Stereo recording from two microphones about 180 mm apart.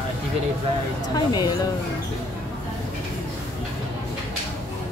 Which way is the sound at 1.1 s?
25° left (ahead or behind).